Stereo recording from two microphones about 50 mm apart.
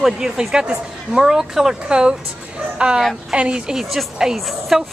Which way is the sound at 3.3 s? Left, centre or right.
Centre.